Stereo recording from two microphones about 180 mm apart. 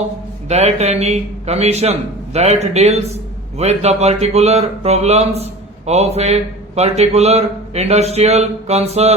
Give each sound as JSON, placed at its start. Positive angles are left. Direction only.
{"t": 0.4, "sound": "speech", "side_deg": -35}